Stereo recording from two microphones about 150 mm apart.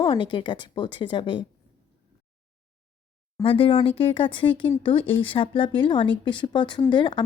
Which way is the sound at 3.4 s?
35° left (ahead or behind).